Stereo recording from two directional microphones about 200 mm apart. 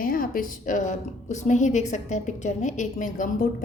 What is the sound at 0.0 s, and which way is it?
A woman's voice, 45° left (ahead or behind).